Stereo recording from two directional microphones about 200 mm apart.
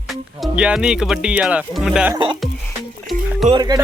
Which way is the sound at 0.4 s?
5° right (ahead or behind).